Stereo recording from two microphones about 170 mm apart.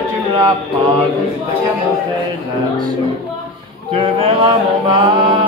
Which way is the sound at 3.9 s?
30° right (ahead or behind).